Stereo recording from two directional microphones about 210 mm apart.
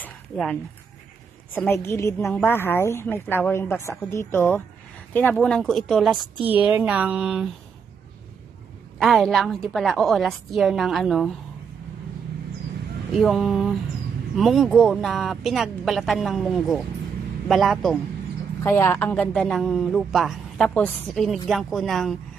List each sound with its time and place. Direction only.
0.0 s a sound: 5° left (ahead or behind)
1.5 s a woman's voice: 10° left (ahead or behind)
9.0 s speech: centre (ahead or behind)
13.1 s speech: centre (ahead or behind)
18.6 s speech: 10° left (ahead or behind)